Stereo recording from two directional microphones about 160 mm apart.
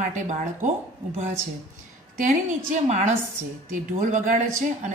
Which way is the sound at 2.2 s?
50° right (ahead or behind).